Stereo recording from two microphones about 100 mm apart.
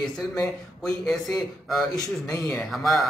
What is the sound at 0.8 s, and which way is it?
A man's voice, 5° left (ahead or behind).